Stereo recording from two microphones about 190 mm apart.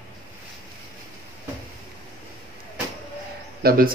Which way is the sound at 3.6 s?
50° right (ahead or behind).